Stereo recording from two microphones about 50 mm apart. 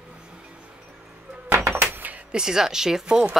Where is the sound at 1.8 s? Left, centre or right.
Right.